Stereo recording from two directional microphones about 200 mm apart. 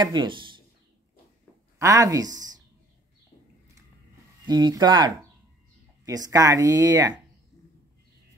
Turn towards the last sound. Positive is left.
turn(degrees=-20)  # may be behind; listen again after turning